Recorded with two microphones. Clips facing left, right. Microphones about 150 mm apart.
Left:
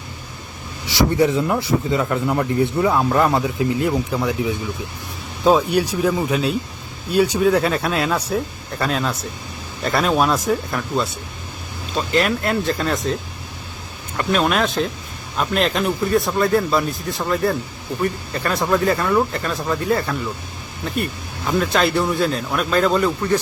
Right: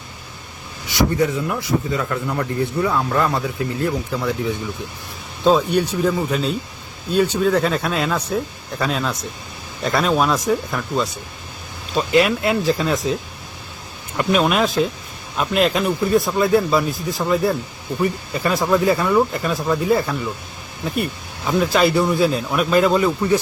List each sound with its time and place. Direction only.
1.2 s speech: 25° left (ahead or behind); by 13.1 s centre (ahead or behind)
14.2 s speech: 5° right (ahead or behind)